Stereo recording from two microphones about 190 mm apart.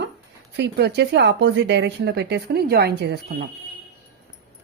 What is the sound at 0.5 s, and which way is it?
A woman's voice, 60° right (ahead or behind).